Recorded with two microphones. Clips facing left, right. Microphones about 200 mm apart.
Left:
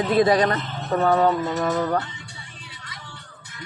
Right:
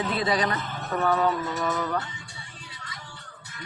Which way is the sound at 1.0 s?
40° left (ahead or behind).